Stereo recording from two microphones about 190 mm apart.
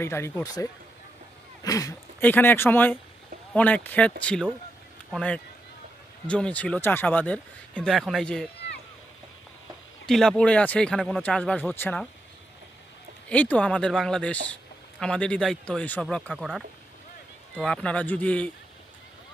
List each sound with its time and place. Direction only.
0.0 s speech: 15° left (ahead or behind)
10.0 s speech: 5° left (ahead or behind)
13.3 s speech: 5° left (ahead or behind)